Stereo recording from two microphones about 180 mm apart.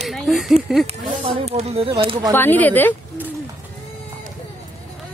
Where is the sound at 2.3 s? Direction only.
10° left (ahead or behind).